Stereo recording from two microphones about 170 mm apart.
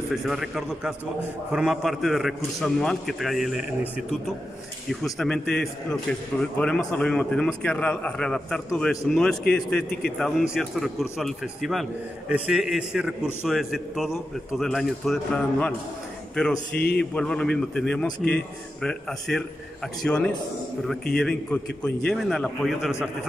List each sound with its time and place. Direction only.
0.1 s a man's voice: centre (ahead or behind)
5.0 s a man's voice: centre (ahead or behind)
16.7 s speech: 70° left (ahead or behind)
17.0 s a man's voice: 5° left (ahead or behind)